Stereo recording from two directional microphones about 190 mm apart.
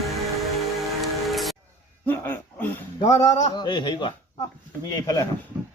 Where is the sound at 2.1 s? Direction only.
10° left (ahead or behind).